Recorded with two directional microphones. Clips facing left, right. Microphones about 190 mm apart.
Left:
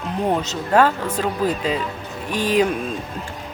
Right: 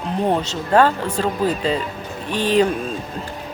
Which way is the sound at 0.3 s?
5° left (ahead or behind).